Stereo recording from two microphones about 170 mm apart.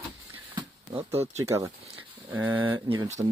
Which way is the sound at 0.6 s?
35° right (ahead or behind).